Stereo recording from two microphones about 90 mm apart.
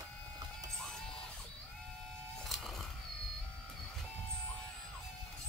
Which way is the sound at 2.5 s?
Centre (ahead or behind).